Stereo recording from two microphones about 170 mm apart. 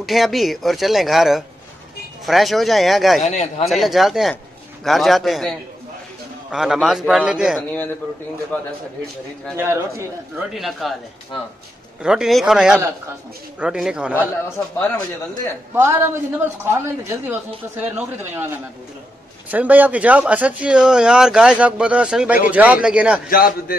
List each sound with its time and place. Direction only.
0.0 s speech: centre (ahead or behind)
3.3 s a man's voice: 45° left (ahead or behind)
3.6 s speech: centre (ahead or behind)
8.5 s a man's voice: 10° left (ahead or behind)
9.6 s speech: 15° right (ahead or behind)
10.4 s speech: centre (ahead or behind)
12.0 s speech: 5° right (ahead or behind)
15.7 s speech: 15° right (ahead or behind)
19.5 s speech: 10° right (ahead or behind)
23.3 s a man's voice: 60° left (ahead or behind)